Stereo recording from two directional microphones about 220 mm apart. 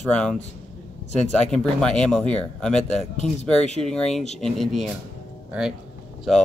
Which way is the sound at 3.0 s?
30° left (ahead or behind).